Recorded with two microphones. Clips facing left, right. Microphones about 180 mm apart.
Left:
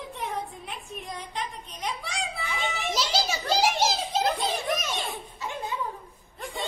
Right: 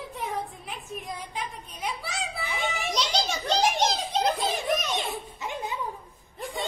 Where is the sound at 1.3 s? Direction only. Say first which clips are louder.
Left 1 dB; 5° right (ahead or behind).